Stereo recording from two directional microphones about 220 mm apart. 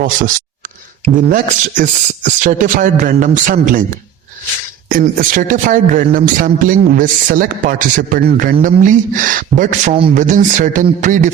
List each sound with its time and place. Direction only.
1.3 s a man's voice: 35° right (ahead or behind)
4.9 s a man's voice: 40° right (ahead or behind)